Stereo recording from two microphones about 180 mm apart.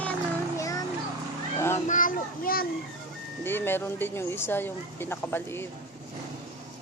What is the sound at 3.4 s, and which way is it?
Speech, 10° left (ahead or behind).